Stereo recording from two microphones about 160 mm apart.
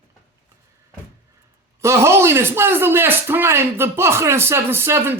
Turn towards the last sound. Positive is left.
turn(degrees=-15)  # may be behind; listen again after turning